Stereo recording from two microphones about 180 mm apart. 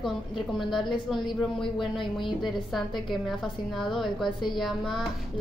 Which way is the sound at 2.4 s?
Centre (ahead or behind).